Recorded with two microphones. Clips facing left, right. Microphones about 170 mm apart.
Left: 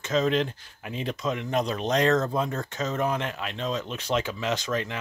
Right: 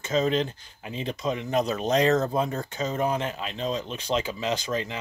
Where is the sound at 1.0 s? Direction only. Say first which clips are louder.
Right 1 dB; centre (ahead or behind).